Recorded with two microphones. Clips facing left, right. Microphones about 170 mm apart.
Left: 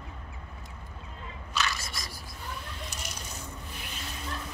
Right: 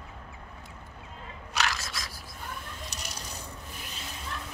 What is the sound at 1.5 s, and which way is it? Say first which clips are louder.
Single-lens reflex camera: right 1 dB; 80° right.